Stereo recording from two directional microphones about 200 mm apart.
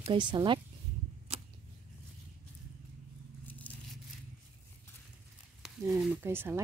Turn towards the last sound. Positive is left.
turn(degrees=-10)  # may be behind; listen again after turning